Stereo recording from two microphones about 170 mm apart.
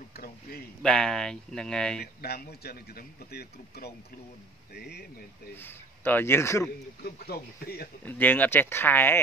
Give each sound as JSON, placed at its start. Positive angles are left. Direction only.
{"t": 0.1, "sound": "speech", "side_deg": 65}
{"t": 0.8, "sound": "speech", "side_deg": 5}
{"t": 2.2, "sound": "speech", "side_deg": 70}
{"t": 5.6, "sound": "speech", "side_deg": 10}
{"t": 7.0, "sound": "speech", "side_deg": 65}
{"t": 8.0, "sound": "speech", "side_deg": 10}